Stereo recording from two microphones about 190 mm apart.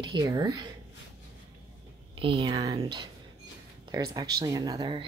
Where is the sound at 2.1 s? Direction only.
25° right (ahead or behind).